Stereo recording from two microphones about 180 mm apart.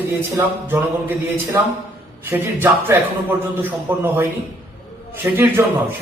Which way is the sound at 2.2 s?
10° right (ahead or behind).